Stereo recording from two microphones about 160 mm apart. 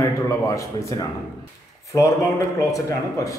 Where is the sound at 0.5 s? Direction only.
20° left (ahead or behind).